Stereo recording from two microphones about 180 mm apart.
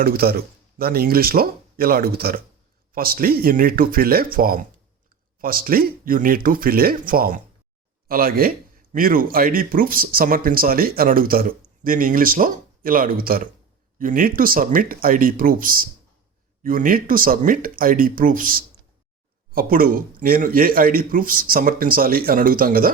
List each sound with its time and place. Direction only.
0.0 s speech: 55° right (ahead or behind)